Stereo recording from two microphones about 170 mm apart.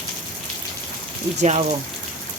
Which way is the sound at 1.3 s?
40° right (ahead or behind).